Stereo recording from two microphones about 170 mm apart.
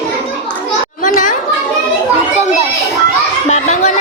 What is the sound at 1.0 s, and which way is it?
Chatter, 50° left (ahead or behind).